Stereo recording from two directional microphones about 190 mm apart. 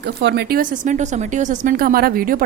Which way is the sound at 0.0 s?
65° right (ahead or behind).